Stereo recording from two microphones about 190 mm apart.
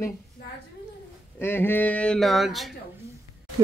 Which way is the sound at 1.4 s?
10° left (ahead or behind).